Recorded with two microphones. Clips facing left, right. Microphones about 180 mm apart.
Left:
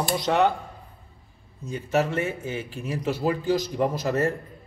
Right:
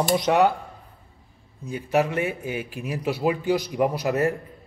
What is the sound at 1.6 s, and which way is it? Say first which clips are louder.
A man's voice: right 2 dB; 15° right (ahead or behind).